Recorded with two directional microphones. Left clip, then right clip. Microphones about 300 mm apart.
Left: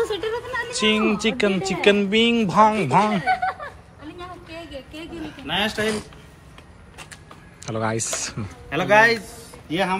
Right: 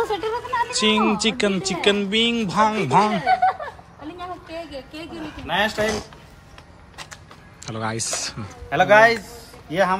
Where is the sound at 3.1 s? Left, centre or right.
Right.